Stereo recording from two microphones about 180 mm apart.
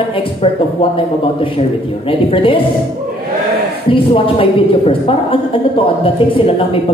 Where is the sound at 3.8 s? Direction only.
30° left (ahead or behind).